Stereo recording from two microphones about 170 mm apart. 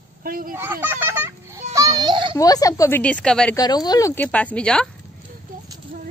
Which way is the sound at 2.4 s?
20° left (ahead or behind).